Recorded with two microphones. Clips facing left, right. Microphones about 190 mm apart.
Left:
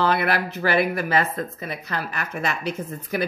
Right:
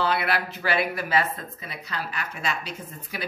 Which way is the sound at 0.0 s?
50° left (ahead or behind).